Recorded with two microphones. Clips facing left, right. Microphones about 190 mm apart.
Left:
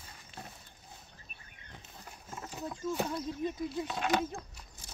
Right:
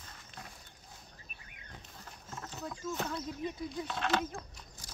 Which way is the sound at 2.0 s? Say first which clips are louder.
Left 1 dB; 10° left (ahead or behind).